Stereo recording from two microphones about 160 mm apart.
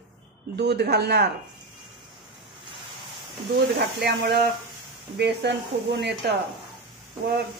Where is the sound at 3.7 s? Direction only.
90° right.